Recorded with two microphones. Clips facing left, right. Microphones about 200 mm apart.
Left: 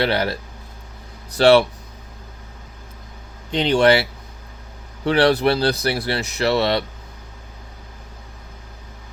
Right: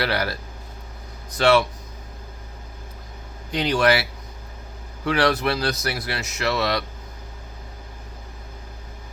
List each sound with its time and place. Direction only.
0.0 s speech: 25° left (ahead or behind)
1.4 s speech: 30° left (ahead or behind)
3.5 s speech: 25° left (ahead or behind)
5.0 s speech: 30° left (ahead or behind)